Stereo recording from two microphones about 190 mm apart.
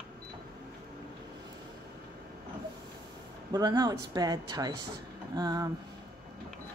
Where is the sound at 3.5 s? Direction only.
20° right (ahead or behind).